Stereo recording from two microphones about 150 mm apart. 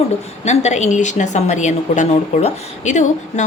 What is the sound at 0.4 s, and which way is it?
A woman's voice, 50° left (ahead or behind).